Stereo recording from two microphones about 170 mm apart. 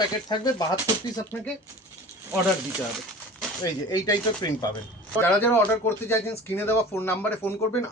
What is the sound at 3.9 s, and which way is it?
Speech, 25° left (ahead or behind).